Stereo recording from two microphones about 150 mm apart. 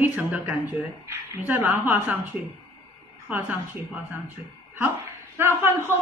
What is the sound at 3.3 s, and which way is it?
Speech, 10° right (ahead or behind).